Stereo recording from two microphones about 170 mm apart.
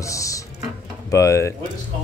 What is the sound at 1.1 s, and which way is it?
Cutlery, 20° left (ahead or behind).